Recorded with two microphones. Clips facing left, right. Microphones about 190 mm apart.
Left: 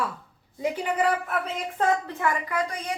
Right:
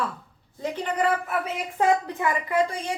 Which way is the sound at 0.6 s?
10° left (ahead or behind).